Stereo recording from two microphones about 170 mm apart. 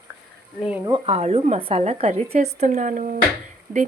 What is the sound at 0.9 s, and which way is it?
A woman's voice, 35° right (ahead or behind).